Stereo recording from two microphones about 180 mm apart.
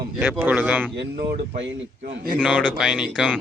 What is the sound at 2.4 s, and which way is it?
Speech, 5° right (ahead or behind).